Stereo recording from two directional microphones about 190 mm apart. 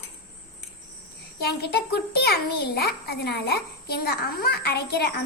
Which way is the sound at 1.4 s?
55° left (ahead or behind).